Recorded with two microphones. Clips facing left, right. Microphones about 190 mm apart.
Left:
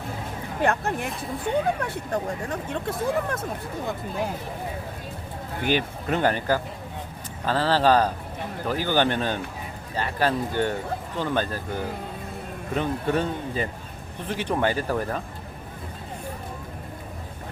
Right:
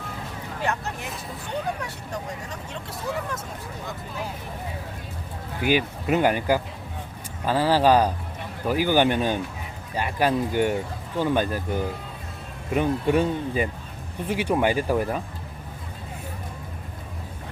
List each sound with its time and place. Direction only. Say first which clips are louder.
0.6 s speech: left 5 dB; 55° left (ahead or behind)
5.6 s speech: right 2 dB; 10° right (ahead or behind)